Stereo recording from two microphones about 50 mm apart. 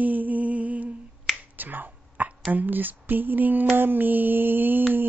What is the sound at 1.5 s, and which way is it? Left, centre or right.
Finger snapping, right.